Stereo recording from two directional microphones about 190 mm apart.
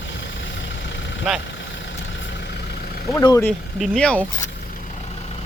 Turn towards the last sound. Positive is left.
turn(degrees=5)  # may be behind; listen again after turning